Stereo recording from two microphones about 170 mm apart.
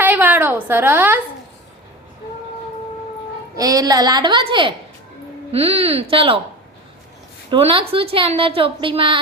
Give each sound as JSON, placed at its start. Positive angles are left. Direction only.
{"t": 0.0, "sound": "a sound", "side_deg": -10}
{"t": 3.5, "sound": "a woman's voice", "side_deg": -20}
{"t": 7.5, "sound": "a woman's voice", "side_deg": -30}